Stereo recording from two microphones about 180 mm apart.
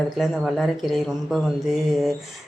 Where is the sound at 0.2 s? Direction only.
Centre (ahead or behind).